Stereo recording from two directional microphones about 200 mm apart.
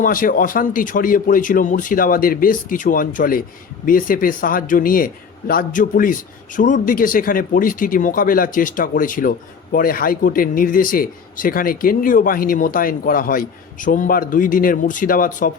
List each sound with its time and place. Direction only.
0.0 s speech: 45° left (ahead or behind)